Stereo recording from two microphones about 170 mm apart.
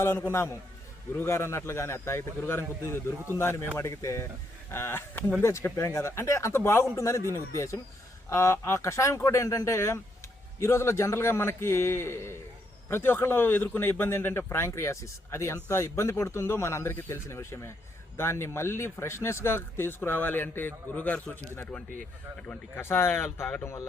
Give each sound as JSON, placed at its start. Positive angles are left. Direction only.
{"t": 0.0, "sound": "speech", "side_deg": 15}